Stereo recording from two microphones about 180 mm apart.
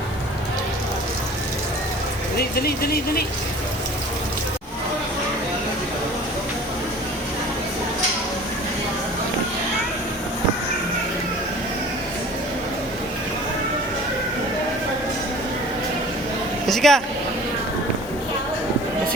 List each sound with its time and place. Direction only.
2.4 s speech: 60° left (ahead or behind)
16.6 s vehicle: centre (ahead or behind)